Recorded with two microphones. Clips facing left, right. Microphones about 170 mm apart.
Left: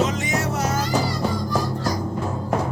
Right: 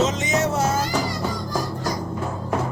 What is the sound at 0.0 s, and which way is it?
Music, 20° right (ahead or behind).